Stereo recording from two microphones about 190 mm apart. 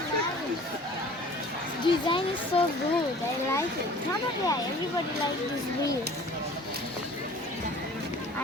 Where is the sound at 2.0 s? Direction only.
25° left (ahead or behind).